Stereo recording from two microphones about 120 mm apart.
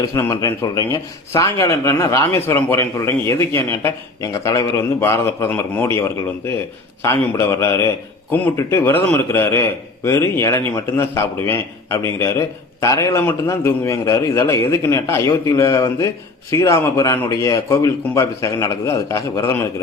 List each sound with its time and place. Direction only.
0.0 s a man's voice: 25° left (ahead or behind)